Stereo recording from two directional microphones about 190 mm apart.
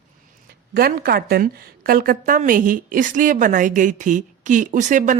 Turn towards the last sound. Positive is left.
turn(degrees=-40)  # may be behind; listen again after turning